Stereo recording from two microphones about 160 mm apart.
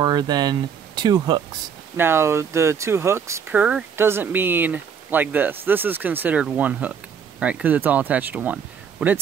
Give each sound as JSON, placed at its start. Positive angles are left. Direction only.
{"t": 0.0, "sound": "speech", "side_deg": -25}
{"t": 2.0, "sound": "speech", "side_deg": -15}